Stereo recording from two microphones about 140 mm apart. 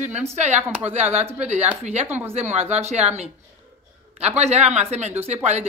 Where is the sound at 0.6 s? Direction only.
10° right (ahead or behind).